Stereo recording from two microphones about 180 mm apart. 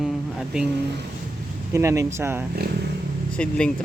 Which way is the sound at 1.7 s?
15° right (ahead or behind).